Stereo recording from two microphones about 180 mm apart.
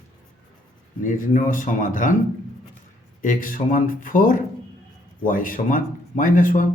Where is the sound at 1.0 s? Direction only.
45° left (ahead or behind).